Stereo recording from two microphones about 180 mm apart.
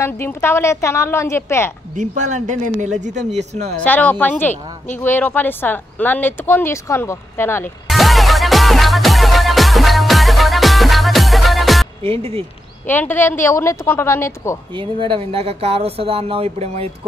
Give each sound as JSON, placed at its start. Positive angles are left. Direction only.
{"t": 0.0, "sound": "speech", "side_deg": 15}
{"t": 2.0, "sound": "a woman's voice", "side_deg": -40}
{"t": 3.8, "sound": "speech", "side_deg": 10}
{"t": 7.9, "sound": "music", "side_deg": 0}
{"t": 12.0, "sound": "speech", "side_deg": -30}
{"t": 12.8, "sound": "speech", "side_deg": 10}
{"t": 14.7, "sound": "speech", "side_deg": -30}